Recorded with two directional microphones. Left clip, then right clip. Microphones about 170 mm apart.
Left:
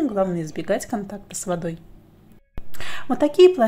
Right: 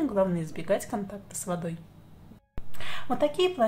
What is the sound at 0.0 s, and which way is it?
A woman's voice, 25° left (ahead or behind).